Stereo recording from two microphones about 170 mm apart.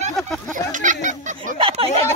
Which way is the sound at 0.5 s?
50° right (ahead or behind).